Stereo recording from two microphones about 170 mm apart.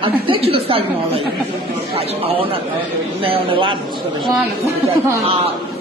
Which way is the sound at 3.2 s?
30° right (ahead or behind).